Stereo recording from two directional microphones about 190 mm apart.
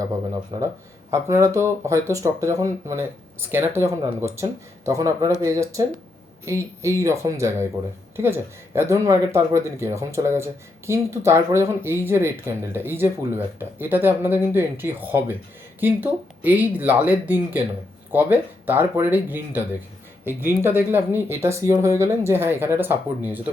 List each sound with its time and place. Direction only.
0.5 s speech: 20° right (ahead or behind)